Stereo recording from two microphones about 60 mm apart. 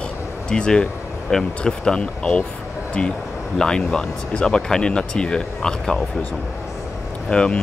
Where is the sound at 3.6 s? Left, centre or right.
Centre.